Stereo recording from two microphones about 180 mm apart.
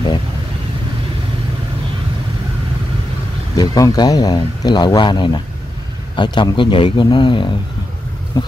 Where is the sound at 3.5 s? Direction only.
20° left (ahead or behind).